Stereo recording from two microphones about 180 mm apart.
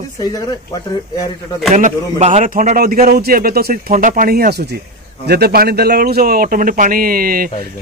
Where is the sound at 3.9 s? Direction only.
45° right (ahead or behind).